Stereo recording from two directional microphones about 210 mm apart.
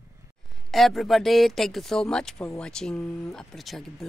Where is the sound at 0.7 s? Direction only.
Centre (ahead or behind).